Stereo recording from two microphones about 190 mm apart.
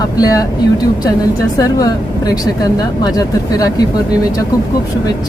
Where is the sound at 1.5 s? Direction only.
20° left (ahead or behind).